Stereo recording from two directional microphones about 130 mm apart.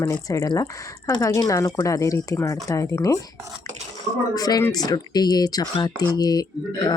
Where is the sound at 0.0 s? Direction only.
20° left (ahead or behind).